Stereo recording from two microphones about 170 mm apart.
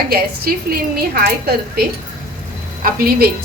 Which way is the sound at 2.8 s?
65° right (ahead or behind).